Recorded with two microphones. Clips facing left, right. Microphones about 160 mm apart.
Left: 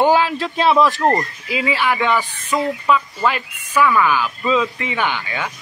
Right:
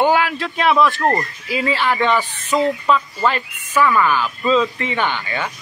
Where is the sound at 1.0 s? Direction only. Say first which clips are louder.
Left 1 dB; 15° left (ahead or behind).